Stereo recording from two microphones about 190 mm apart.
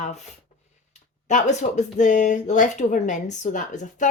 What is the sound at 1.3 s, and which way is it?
Speech, 40° left (ahead or behind).